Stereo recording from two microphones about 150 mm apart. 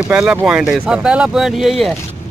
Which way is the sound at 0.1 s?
5° right (ahead or behind).